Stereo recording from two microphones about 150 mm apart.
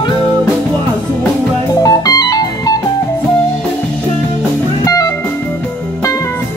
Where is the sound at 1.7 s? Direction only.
25° left (ahead or behind).